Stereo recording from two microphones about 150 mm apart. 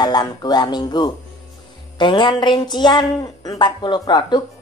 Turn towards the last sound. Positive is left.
turn(degrees=30)  # may be behind; listen again after turning